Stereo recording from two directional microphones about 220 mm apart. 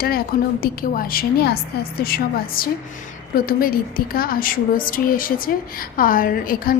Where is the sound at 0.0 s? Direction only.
40° left (ahead or behind).